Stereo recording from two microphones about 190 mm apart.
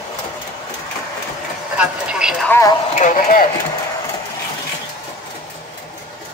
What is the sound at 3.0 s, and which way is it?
Speech, 45° left (ahead or behind).